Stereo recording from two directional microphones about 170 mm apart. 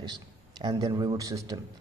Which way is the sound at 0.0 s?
25° right (ahead or behind).